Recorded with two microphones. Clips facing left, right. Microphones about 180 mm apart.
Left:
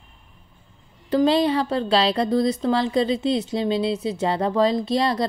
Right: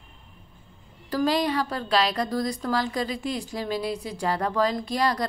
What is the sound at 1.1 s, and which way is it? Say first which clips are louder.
A woman's voice: left 5 dB; 25° left (ahead or behind).